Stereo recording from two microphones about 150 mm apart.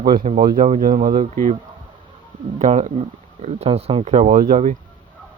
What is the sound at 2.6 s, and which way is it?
Speech, 50° right (ahead or behind).